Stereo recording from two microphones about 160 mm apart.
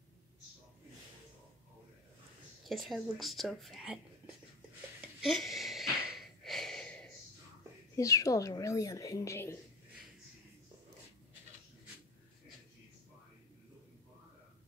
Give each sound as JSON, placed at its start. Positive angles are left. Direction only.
{"t": 2.6, "sound": "speech", "side_deg": 0}
{"t": 5.2, "sound": "wheeze", "side_deg": 0}
{"t": 7.9, "sound": "a woman's voice", "side_deg": 20}